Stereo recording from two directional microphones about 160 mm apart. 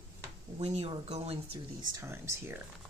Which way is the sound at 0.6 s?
40° right (ahead or behind).